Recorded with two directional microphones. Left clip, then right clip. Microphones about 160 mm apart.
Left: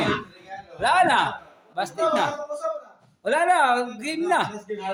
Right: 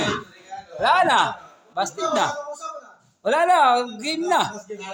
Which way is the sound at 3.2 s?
15° right (ahead or behind).